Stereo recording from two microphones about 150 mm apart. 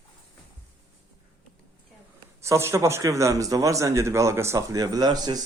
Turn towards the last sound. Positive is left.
turn(degrees=-25)  # may be behind; listen again after turning